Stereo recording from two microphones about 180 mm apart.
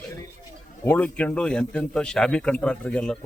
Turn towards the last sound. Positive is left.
turn(degrees=5)  # may be behind; listen again after turning